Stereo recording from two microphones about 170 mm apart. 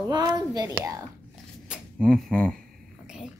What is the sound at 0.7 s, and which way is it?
Speech, 10° right (ahead or behind).